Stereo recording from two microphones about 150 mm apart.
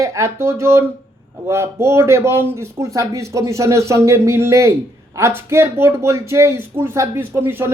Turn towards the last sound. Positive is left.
turn(degrees=-15)  # may be behind; listen again after turning